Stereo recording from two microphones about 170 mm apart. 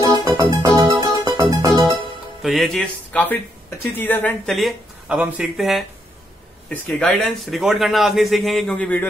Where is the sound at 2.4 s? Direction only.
Centre (ahead or behind).